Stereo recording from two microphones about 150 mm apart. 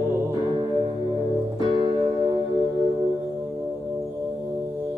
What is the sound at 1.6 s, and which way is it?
Music, 30° right (ahead or behind).